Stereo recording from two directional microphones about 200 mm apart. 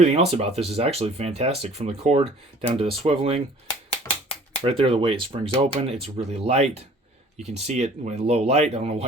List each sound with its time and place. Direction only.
0.0 s speech: 30° right (ahead or behind)
4.6 s speech: 25° right (ahead or behind)